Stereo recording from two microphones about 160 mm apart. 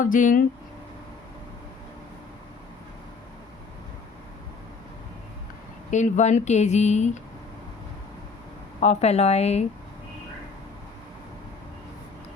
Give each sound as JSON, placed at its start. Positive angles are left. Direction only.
{"t": 0.0, "sound": "speech", "side_deg": 55}
{"t": 5.9, "sound": "speech", "side_deg": 50}
{"t": 8.8, "sound": "a woman's voice", "side_deg": 45}